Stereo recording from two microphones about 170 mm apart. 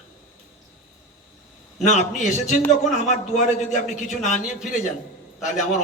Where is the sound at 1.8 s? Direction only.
45° left (ahead or behind).